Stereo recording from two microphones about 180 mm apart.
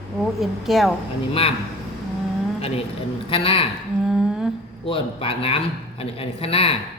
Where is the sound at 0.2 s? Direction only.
Centre (ahead or behind).